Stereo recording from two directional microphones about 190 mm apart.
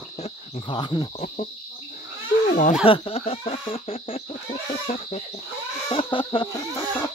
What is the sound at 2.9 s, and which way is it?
Speech, 30° left (ahead or behind).